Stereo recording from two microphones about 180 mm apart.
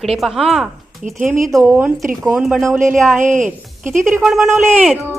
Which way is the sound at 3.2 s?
45° right (ahead or behind).